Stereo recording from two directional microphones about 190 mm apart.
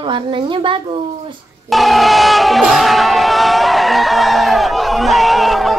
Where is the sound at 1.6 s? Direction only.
Centre (ahead or behind).